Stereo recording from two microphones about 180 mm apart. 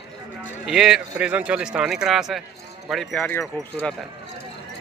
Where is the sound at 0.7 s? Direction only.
5° right (ahead or behind).